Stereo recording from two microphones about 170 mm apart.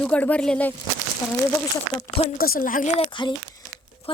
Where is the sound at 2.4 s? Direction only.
55° left (ahead or behind).